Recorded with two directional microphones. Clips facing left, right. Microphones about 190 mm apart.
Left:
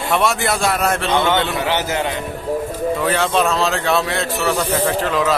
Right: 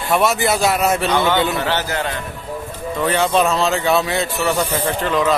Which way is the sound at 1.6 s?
15° left (ahead or behind).